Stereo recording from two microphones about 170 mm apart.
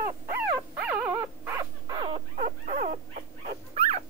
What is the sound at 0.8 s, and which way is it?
Dog, 10° right (ahead or behind).